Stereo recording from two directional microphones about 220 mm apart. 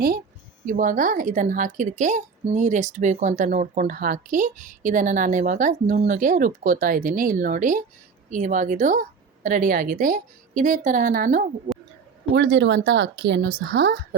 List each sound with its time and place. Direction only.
0.6 s a woman's voice: 35° right (ahead or behind)
11.7 s a sound: 40° right (ahead or behind)
12.3 s a woman's voice: 55° right (ahead or behind)